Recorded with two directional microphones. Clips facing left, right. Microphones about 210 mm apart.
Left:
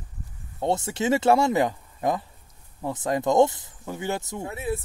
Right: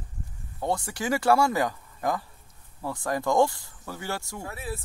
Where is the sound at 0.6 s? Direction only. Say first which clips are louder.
Left 4 dB; 25° left (ahead or behind).